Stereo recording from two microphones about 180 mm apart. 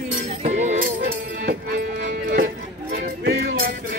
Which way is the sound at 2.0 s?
60° right (ahead or behind).